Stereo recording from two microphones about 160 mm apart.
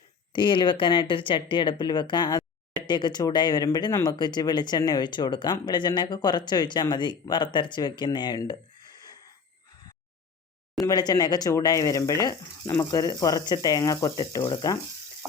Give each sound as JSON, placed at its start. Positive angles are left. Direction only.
{"t": 0.3, "sound": "speech", "side_deg": 30}
{"t": 10.8, "sound": "speech", "side_deg": 25}